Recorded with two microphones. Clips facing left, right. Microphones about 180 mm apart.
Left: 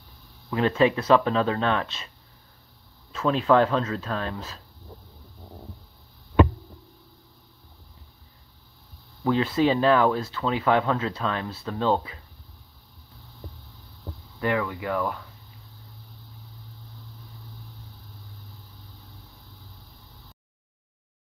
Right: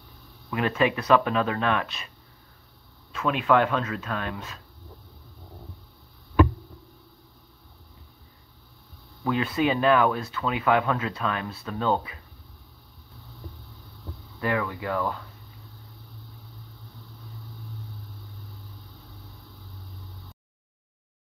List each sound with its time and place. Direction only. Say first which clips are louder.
0.5 s speech: left 3 dB; 25° left (ahead or behind)
3.1 s speech: left 2 dB; 30° left (ahead or behind)
9.3 s speech: left 3 dB; 30° left (ahead or behind)
14.4 s speech: left 1 dB; 20° left (ahead or behind)